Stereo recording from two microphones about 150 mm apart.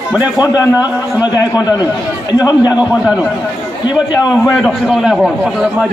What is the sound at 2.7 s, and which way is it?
Speech, 5° right (ahead or behind).